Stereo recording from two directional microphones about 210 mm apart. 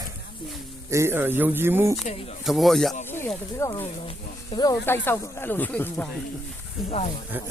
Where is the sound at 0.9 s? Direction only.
10° right (ahead or behind).